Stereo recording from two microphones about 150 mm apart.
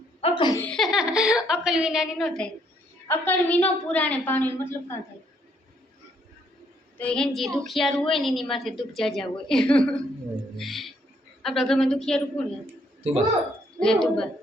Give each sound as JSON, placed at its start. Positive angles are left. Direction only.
{"t": 0.2, "sound": "laughter", "side_deg": 35}
{"t": 0.6, "sound": "a woman's voice", "side_deg": 5}
{"t": 7.0, "sound": "a woman's voice", "side_deg": 5}
{"t": 13.7, "sound": "a woman's voice", "side_deg": 5}